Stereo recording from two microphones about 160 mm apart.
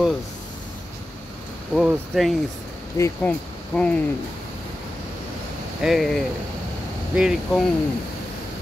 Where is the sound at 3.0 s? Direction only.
20° left (ahead or behind).